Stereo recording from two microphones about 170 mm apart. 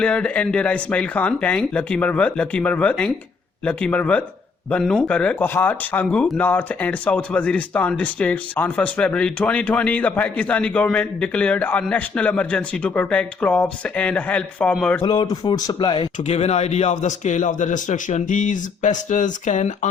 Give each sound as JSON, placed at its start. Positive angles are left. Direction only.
{"t": 0.0, "sound": "speech", "side_deg": 5}
{"t": 15.0, "sound": "speech", "side_deg": 25}
{"t": 16.2, "sound": "speech", "side_deg": 40}